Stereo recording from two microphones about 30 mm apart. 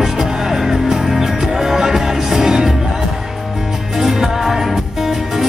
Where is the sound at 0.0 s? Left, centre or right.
Centre.